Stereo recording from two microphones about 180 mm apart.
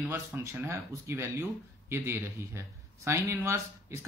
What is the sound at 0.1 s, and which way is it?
Speech, 15° right (ahead or behind).